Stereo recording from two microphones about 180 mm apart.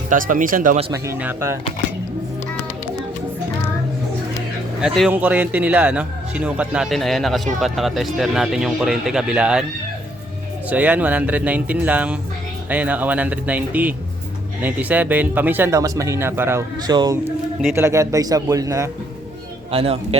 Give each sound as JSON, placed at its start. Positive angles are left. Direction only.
{"t": 0.1, "sound": "speech", "side_deg": -50}
{"t": 0.9, "sound": "speech", "side_deg": -15}
{"t": 4.8, "sound": "speech", "side_deg": -5}
{"t": 10.7, "sound": "speech", "side_deg": -10}
{"t": 19.7, "sound": "a man's voice", "side_deg": -35}